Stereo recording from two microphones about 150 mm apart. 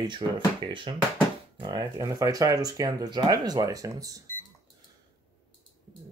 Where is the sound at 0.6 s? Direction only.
30° right (ahead or behind).